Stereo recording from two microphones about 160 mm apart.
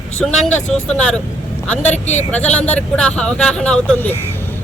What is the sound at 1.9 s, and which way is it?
Speech, 45° left (ahead or behind).